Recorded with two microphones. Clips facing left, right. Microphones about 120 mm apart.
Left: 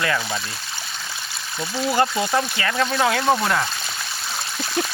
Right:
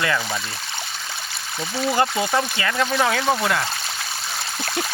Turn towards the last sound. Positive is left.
turn(degrees=0)  # may be behind; listen again after turning